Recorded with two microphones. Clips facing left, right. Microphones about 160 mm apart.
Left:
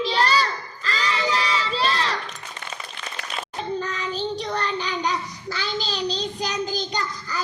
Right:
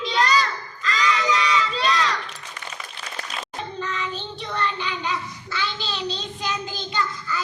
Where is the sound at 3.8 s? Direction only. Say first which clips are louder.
Left 2 dB; 35° left (ahead or behind).